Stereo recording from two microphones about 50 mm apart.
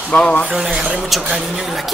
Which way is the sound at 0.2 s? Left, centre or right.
Left.